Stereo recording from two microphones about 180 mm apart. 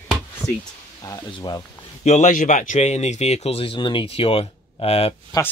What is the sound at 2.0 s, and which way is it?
Speech, 40° left (ahead or behind).